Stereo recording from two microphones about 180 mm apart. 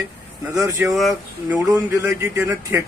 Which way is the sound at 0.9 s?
Centre (ahead or behind).